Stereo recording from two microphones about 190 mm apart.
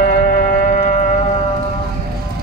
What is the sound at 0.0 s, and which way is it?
Music, 50° left (ahead or behind).